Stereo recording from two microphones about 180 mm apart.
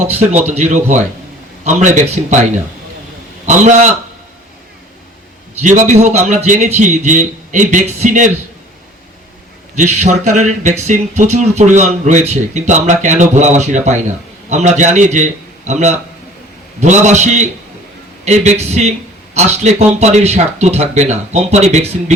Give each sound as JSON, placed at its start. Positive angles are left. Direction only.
{"t": 0.0, "sound": "speech", "side_deg": -40}
{"t": 3.4, "sound": "speech", "side_deg": -40}
{"t": 5.6, "sound": "a man's voice", "side_deg": -40}
{"t": 9.7, "sound": "speech", "side_deg": -40}
{"t": 18.6, "sound": "speech", "side_deg": -40}